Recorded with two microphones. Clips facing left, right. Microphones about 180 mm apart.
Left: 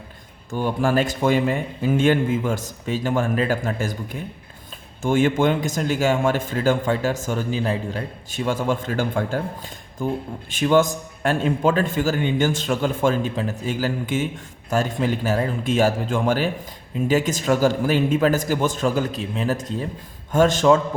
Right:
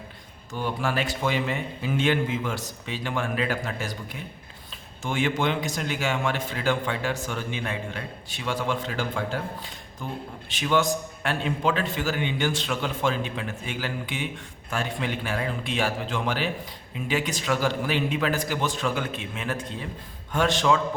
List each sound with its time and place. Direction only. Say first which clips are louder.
0.5 s a man's voice: left 7 dB; 45° left (ahead or behind)